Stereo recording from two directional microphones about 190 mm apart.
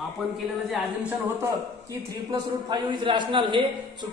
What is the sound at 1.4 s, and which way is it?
A man's voice, 20° right (ahead or behind).